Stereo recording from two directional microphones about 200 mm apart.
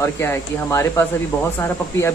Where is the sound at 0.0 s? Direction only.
15° left (ahead or behind).